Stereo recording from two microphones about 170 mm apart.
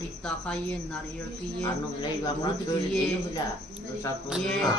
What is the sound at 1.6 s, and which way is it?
Speech, 25° left (ahead or behind).